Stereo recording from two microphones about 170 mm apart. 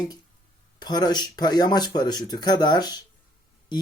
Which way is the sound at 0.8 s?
25° left (ahead or behind).